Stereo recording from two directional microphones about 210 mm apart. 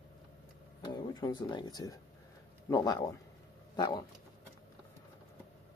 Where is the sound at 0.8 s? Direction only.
20° left (ahead or behind).